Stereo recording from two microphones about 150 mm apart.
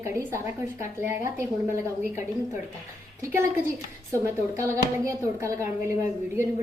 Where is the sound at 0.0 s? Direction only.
15° right (ahead or behind).